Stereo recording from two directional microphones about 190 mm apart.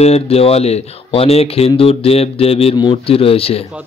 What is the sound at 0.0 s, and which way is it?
Speech, 35° left (ahead or behind).